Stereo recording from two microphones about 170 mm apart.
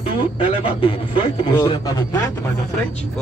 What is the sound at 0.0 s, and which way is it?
Speech, 30° left (ahead or behind).